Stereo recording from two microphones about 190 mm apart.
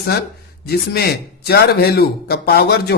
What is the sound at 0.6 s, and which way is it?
Speech, 55° left (ahead or behind).